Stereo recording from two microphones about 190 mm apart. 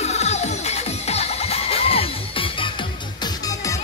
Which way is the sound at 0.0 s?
35° left (ahead or behind).